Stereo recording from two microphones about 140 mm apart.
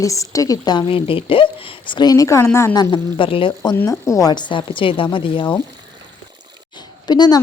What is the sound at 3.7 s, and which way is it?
A woman's voice, 20° left (ahead or behind).